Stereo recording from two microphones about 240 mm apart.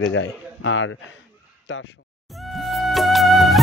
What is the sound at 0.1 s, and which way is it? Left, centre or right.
Speech, left.